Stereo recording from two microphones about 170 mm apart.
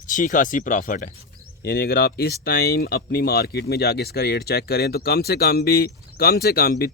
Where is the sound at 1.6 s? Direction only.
65° left (ahead or behind).